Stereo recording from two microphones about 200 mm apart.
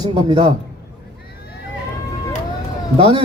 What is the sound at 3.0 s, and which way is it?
Speech, 25° right (ahead or behind).